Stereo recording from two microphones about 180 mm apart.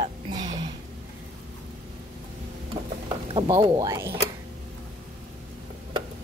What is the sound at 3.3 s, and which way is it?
Speech, 25° right (ahead or behind).